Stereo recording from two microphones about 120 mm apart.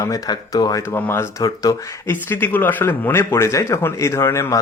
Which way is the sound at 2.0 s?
15° left (ahead or behind).